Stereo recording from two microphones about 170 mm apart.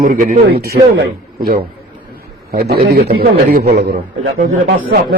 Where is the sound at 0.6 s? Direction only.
70° right (ahead or behind).